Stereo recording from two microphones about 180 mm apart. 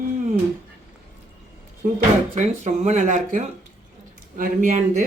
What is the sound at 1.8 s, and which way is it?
Speech, 45° right (ahead or behind).